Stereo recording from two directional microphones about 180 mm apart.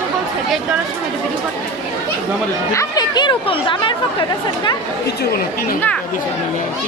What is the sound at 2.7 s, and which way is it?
Speech, 25° left (ahead or behind).